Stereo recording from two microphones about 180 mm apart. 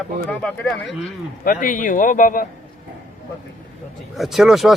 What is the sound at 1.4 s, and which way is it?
Speech, 50° left (ahead or behind).